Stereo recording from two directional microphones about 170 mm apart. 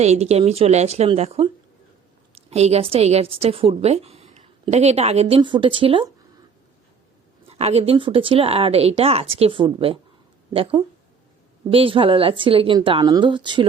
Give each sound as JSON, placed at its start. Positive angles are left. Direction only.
{"t": 0.0, "sound": "a woman's voice", "side_deg": -40}
{"t": 2.5, "sound": "a woman's voice", "side_deg": -40}
{"t": 7.4, "sound": "a woman's voice", "side_deg": -35}